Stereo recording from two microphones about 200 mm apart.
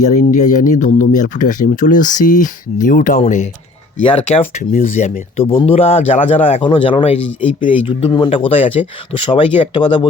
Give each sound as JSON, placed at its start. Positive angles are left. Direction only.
{"t": 0.0, "sound": "speech", "side_deg": 40}